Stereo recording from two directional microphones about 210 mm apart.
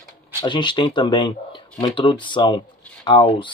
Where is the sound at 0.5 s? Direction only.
20° left (ahead or behind).